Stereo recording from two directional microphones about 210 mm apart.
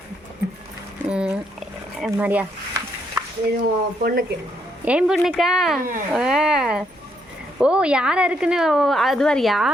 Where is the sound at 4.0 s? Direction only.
45° right (ahead or behind).